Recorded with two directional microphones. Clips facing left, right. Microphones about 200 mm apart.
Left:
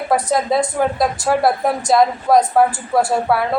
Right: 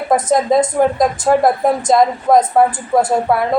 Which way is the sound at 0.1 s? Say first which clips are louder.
Right 4 dB; 20° right (ahead or behind).